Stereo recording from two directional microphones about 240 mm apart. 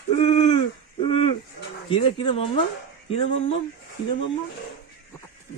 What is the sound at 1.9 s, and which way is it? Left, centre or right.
Speech, left.